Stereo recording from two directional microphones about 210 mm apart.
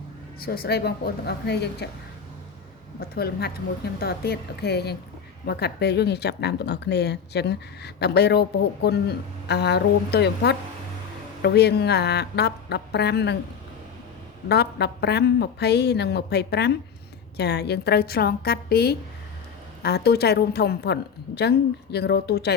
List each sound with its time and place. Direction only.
0.3 s speech: 45° left (ahead or behind)
3.0 s speech: 50° left (ahead or behind)
14.4 s speech: 50° left (ahead or behind)